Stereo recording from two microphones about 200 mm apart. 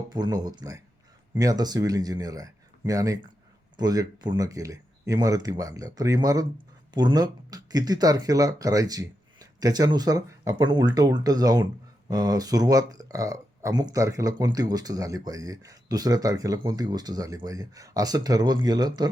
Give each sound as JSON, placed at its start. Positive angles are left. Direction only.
{"t": 0.1, "sound": "speech", "side_deg": -20}